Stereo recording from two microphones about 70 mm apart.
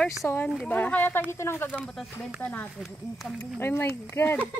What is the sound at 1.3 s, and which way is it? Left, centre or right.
Speech, left.